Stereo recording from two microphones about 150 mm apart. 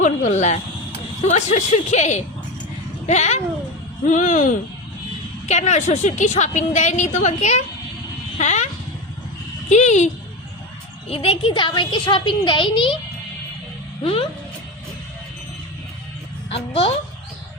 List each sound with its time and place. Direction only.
0.0 s a woman's voice: 55° left (ahead or behind)
5.5 s a woman's voice: 50° left (ahead or behind)
11.1 s a woman's voice: 40° left (ahead or behind)
14.0 s a woman's voice: 40° left (ahead or behind)
16.5 s a woman's voice: 40° left (ahead or behind)